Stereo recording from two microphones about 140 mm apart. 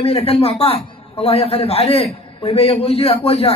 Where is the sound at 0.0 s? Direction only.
45° left (ahead or behind).